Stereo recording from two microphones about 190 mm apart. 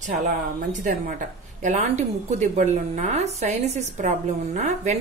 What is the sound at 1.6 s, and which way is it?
A woman's voice, 40° right (ahead or behind).